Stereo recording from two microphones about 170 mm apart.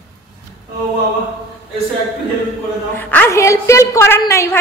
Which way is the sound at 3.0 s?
10° left (ahead or behind).